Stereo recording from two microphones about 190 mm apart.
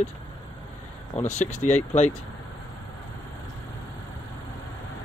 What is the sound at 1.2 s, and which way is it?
Speech, 35° left (ahead or behind).